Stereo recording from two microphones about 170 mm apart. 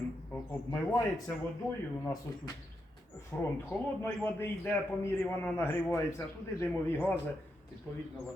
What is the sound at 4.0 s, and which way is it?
A man's voice, 15° left (ahead or behind).